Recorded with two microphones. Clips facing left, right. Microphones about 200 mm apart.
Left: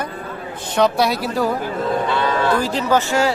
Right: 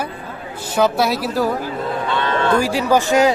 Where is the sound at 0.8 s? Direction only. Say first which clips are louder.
Even; centre (ahead or behind).